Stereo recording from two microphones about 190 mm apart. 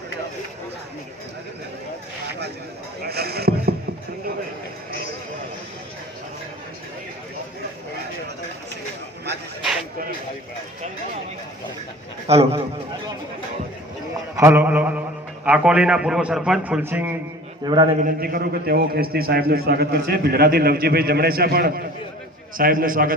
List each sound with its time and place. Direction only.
3.0 s rowboat: 55° right (ahead or behind)
12.3 s a man's voice: 30° right (ahead or behind)
14.3 s a man's voice: 10° right (ahead or behind)
17.7 s a man's voice: 20° right (ahead or behind)
18.0 s a man's voice: 50° right (ahead or behind)